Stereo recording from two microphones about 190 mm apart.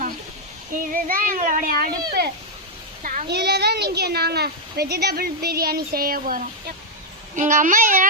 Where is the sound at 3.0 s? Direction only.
45° right (ahead or behind).